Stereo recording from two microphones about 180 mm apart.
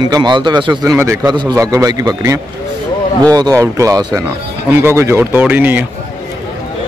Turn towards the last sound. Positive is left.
turn(degrees=-10)  # may be behind; listen again after turning